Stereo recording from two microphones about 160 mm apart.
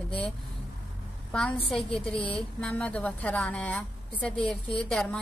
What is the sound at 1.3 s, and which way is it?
A woman's voice, 5° left (ahead or behind).